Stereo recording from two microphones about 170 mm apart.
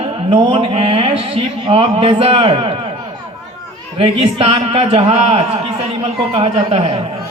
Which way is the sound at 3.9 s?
35° right (ahead or behind).